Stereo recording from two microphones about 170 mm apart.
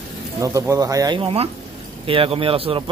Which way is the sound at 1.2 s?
35° right (ahead or behind).